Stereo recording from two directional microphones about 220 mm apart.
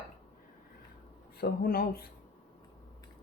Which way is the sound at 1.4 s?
40° left (ahead or behind).